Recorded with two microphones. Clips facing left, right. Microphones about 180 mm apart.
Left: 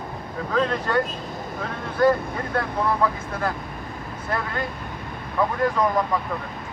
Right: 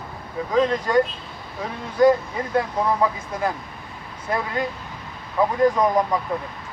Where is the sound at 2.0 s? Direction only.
15° right (ahead or behind).